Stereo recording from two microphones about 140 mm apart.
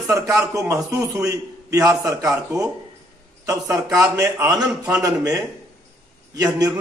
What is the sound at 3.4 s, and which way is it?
A man's voice, 20° right (ahead or behind).